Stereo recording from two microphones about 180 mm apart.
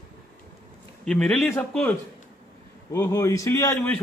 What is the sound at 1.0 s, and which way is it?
A man's voice, 5° left (ahead or behind).